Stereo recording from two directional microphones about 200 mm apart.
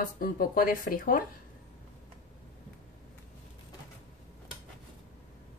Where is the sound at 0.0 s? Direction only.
45° left (ahead or behind).